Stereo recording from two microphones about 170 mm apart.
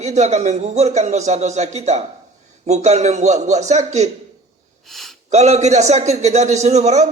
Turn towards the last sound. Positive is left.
turn(degrees=-40)  # may be behind; listen again after turning